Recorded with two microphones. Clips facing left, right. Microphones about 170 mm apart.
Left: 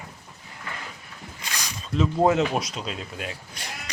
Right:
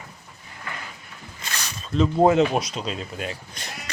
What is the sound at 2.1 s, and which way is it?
Speech, 5° right (ahead or behind).